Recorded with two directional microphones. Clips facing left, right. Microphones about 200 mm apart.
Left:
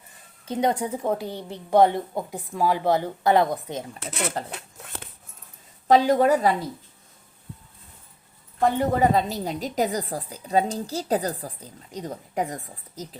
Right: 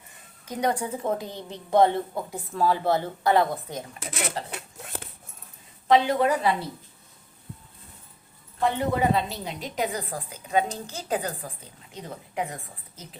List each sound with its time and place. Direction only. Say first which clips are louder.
0.4 s a woman's voice: left 3 dB; 25° left (ahead or behind)
5.9 s a woman's voice: left 3 dB; 40° left (ahead or behind)
8.6 s a woman's voice: left 3 dB; 40° left (ahead or behind)